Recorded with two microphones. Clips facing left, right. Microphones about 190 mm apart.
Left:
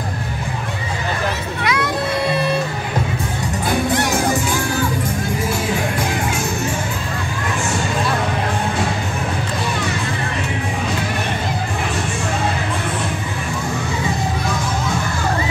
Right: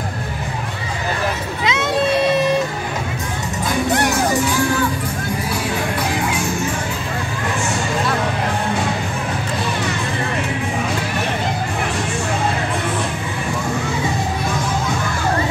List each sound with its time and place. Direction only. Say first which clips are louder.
1.6 s music: right 3 dB; 20° right (ahead or behind)